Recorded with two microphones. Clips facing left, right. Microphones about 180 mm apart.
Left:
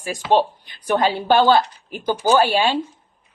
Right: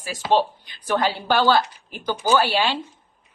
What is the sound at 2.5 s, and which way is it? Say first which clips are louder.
Speech: left 3 dB; 45° left (ahead or behind).